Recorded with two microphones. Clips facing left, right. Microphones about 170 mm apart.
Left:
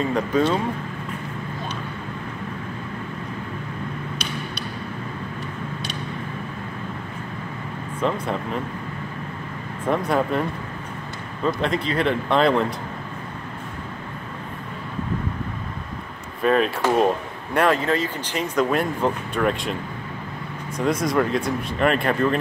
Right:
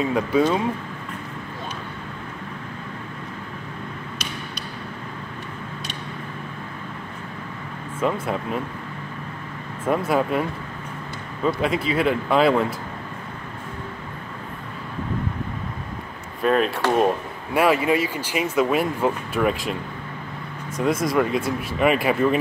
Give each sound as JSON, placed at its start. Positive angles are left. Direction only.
{"t": 0.0, "sound": "speech", "side_deg": -5}
{"t": 8.0, "sound": "speech", "side_deg": -5}
{"t": 9.8, "sound": "speech", "side_deg": -5}
{"t": 11.4, "sound": "speech", "side_deg": -5}
{"t": 16.4, "sound": "speech", "side_deg": 0}